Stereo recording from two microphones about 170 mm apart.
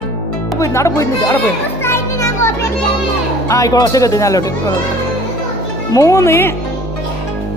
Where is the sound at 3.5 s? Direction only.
20° left (ahead or behind).